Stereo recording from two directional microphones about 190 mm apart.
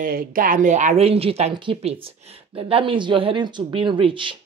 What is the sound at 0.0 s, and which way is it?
Speech, 50° right (ahead or behind).